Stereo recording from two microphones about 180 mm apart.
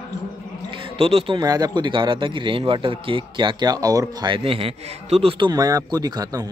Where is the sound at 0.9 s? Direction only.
35° right (ahead or behind).